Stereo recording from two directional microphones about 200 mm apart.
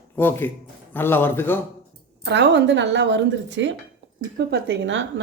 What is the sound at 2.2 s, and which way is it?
Speech, 60° right (ahead or behind).